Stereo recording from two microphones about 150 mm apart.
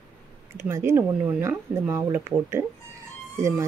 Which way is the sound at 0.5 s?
15° right (ahead or behind).